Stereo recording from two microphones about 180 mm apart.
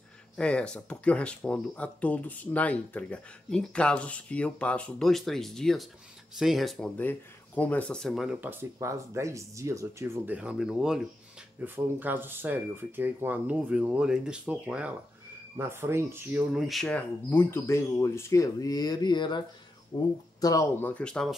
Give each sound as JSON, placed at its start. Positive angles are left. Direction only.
{"t": 0.4, "sound": "speech", "side_deg": 5}